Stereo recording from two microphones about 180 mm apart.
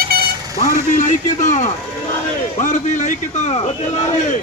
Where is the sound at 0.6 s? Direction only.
45° left (ahead or behind).